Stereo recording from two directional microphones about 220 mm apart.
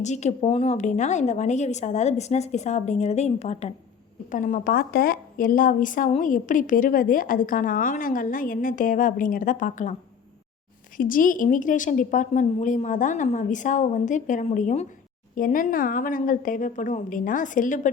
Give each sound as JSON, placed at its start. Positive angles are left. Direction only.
{"t": 0.0, "sound": "a woman's voice", "side_deg": 30}
{"t": 10.9, "sound": "a woman's voice", "side_deg": 40}